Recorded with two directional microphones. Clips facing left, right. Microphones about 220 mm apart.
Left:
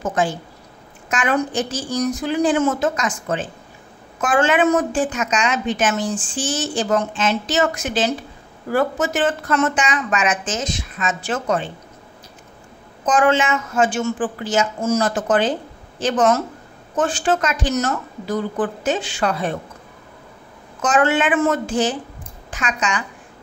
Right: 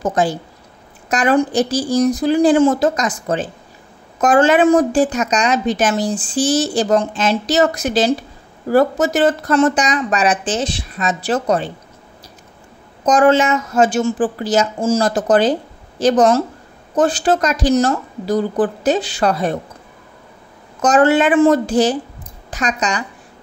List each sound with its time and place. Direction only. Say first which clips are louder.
0.0 s a woman's voice: right 4 dB; 35° right (ahead or behind)
13.0 s a woman's voice: right 5 dB; 40° right (ahead or behind)
20.8 s a woman's voice: right 5 dB; 40° right (ahead or behind)